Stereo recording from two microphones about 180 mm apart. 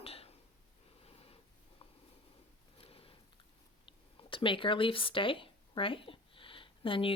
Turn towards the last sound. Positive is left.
turn(degrees=30)  # may be behind; listen again after turning